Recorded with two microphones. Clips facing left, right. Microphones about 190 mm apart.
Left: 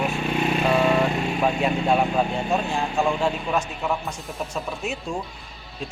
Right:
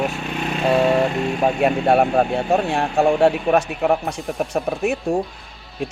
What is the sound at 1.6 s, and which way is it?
Speech, 60° right (ahead or behind).